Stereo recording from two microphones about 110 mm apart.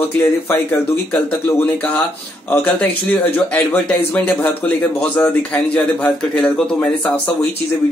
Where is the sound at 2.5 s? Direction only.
15° left (ahead or behind).